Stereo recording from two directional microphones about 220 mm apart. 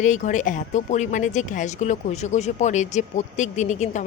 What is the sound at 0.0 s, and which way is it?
Speech, 35° left (ahead or behind).